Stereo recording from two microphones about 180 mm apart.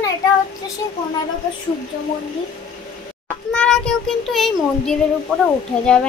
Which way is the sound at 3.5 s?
5° left (ahead or behind).